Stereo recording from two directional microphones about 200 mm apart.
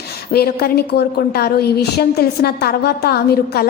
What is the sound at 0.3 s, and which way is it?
A woman's voice, 50° left (ahead or behind).